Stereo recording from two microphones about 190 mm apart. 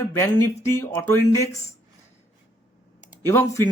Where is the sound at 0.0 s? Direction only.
15° left (ahead or behind).